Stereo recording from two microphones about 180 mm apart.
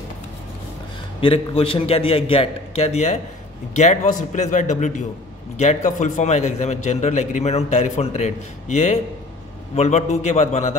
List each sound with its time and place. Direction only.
1.2 s a man's voice: 30° left (ahead or behind)